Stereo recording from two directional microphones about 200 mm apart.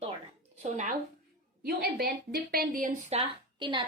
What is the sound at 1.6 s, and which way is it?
Speech, 50° right (ahead or behind).